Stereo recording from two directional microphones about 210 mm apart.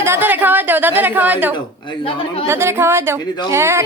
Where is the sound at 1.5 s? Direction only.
20° left (ahead or behind).